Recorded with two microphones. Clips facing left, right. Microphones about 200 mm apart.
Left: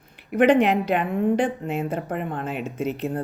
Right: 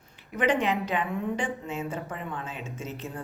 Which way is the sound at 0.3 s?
60° left (ahead or behind).